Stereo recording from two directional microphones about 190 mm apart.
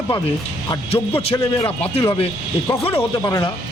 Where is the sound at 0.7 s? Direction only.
10° left (ahead or behind).